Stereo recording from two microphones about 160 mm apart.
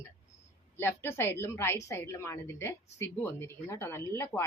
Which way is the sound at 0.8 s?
15° left (ahead or behind).